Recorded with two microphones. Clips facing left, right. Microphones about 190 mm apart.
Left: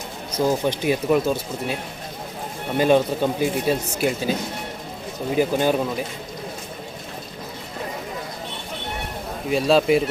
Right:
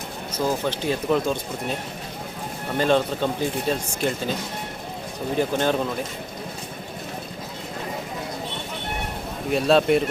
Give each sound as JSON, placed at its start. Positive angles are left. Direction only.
{"t": 0.3, "sound": "speech", "side_deg": 15}
{"t": 2.7, "sound": "speech", "side_deg": 10}
{"t": 5.4, "sound": "speech", "side_deg": 10}
{"t": 9.5, "sound": "speech", "side_deg": 0}